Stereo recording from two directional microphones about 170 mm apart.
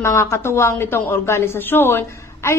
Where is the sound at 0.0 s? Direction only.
15° left (ahead or behind).